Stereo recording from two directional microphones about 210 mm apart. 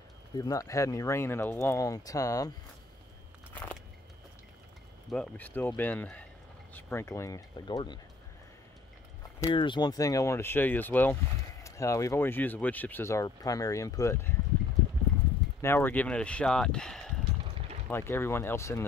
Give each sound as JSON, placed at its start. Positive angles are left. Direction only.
{"t": 0.4, "sound": "speech", "side_deg": 15}
{"t": 5.1, "sound": "speech", "side_deg": 5}
{"t": 9.4, "sound": "speech", "side_deg": 20}
{"t": 15.6, "sound": "speech", "side_deg": 10}
{"t": 17.4, "sound": "a sound", "side_deg": -25}
{"t": 17.8, "sound": "speech", "side_deg": 10}